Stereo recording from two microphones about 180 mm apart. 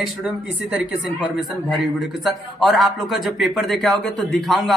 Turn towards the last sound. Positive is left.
turn(degrees=0)  # may be behind; listen again after turning